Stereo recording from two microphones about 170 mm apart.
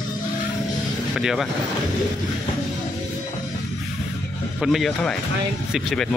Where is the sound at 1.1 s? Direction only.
Centre (ahead or behind).